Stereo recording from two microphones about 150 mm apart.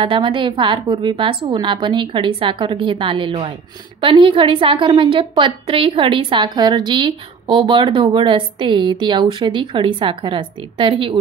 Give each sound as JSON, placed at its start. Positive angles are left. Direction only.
{"t": 0.0, "sound": "a woman's voice", "side_deg": -35}